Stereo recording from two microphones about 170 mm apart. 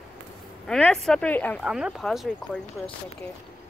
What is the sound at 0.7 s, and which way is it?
Speech, 5° left (ahead or behind).